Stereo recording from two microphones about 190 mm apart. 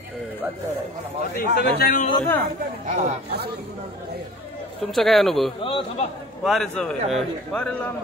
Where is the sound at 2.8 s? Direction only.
40° right (ahead or behind).